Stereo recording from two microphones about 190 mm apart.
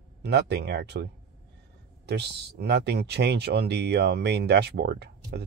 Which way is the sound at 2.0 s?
60° right (ahead or behind).